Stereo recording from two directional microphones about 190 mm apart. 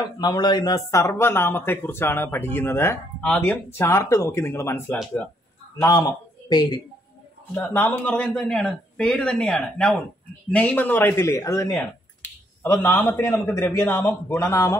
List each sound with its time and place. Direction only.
0.0 s speech: 20° left (ahead or behind)
7.5 s speech: 10° left (ahead or behind)